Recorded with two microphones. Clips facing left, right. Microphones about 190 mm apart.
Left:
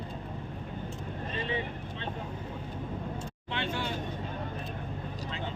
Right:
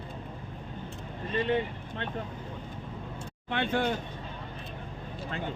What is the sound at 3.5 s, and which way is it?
Speech, 55° right (ahead or behind).